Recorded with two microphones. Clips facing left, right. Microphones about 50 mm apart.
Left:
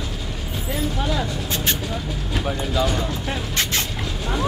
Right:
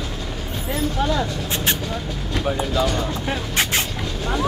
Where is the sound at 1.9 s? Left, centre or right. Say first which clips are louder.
Right 1 dB; centre.